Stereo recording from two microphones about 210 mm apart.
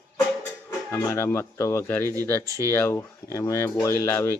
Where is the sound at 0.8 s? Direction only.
15° left (ahead or behind).